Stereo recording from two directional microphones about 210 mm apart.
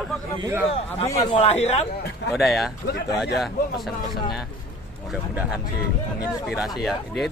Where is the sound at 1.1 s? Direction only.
30° left (ahead or behind).